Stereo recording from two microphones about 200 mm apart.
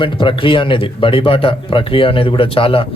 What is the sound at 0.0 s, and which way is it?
Speech, 25° left (ahead or behind).